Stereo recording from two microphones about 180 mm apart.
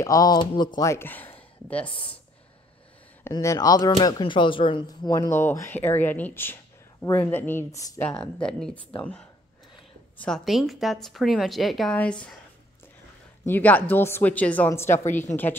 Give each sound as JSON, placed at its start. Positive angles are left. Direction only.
{"t": 0.0, "sound": "speech", "side_deg": 20}
{"t": 3.3, "sound": "speech", "side_deg": 15}
{"t": 8.1, "sound": "speech", "side_deg": 5}
{"t": 10.1, "sound": "speech", "side_deg": 5}
{"t": 13.5, "sound": "speech", "side_deg": 10}